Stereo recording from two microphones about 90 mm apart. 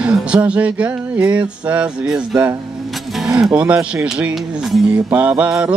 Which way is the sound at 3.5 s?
15° right (ahead or behind).